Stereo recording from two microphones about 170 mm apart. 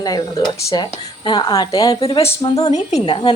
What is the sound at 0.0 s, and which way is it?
A woman's voice, 20° left (ahead or behind).